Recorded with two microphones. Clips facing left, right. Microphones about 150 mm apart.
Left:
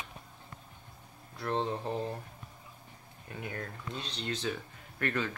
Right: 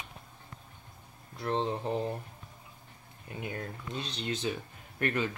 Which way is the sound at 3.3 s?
20° right (ahead or behind).